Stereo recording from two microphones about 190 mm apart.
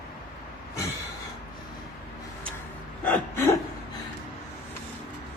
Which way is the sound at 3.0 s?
10° left (ahead or behind).